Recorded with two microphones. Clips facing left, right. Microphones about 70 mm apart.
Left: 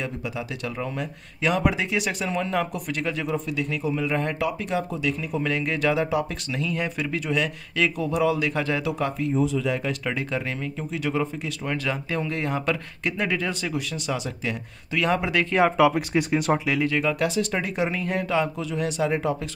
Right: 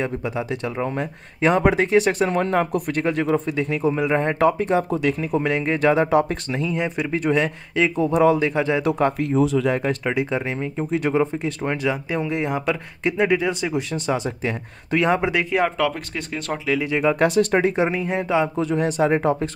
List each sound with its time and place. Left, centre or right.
0.0 s speech: right
5.4 s speech: right
6.6 s speech: right
7.2 s speech: right
8.8 s speech: right
9.3 s speech: right
10.0 s speech: right
11.7 s speech: centre
13.9 s speech: right
15.5 s speech: centre
16.8 s speech: right
17.2 s speech: right; by 18.5 s centre
18.6 s speech: right